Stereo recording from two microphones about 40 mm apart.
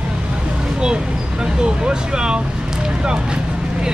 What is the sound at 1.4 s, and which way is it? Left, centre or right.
Speech, right.